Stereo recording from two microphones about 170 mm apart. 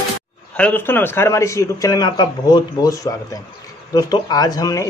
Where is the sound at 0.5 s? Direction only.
10° left (ahead or behind).